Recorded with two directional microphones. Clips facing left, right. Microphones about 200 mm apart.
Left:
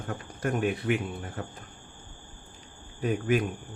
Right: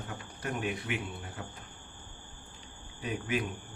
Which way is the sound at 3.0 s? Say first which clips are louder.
Left 7 dB; 50° left (ahead or behind).